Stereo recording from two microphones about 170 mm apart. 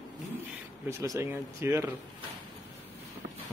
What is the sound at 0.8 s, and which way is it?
Speech, 15° right (ahead or behind).